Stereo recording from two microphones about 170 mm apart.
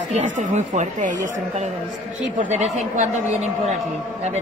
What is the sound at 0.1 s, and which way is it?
A woman's voice, 45° right (ahead or behind).